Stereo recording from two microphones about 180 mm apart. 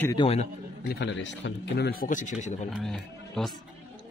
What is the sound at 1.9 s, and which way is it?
Speech, 50° left (ahead or behind).